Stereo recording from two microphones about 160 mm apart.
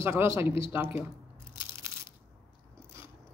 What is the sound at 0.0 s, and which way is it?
Speech, 15° right (ahead or behind).